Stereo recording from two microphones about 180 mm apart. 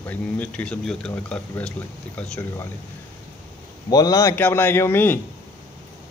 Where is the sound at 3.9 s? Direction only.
20° left (ahead or behind).